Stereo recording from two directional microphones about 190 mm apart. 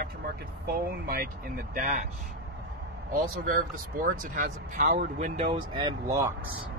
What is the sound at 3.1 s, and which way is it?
Speech, 45° right (ahead or behind).